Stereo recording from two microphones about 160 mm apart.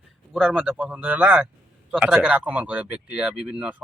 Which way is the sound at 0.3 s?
5° right (ahead or behind).